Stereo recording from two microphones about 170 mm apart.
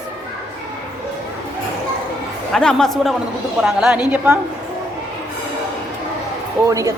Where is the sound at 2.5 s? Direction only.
5° left (ahead or behind).